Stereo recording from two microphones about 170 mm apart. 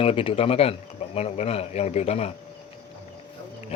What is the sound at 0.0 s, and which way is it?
A man's voice, 35° left (ahead or behind).